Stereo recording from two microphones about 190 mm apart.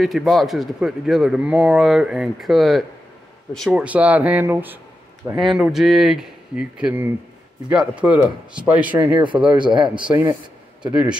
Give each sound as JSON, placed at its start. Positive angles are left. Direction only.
{"t": 0.0, "sound": "speech", "side_deg": 0}
{"t": 9.2, "sound": "speech", "side_deg": -25}
{"t": 10.9, "sound": "speech", "side_deg": -5}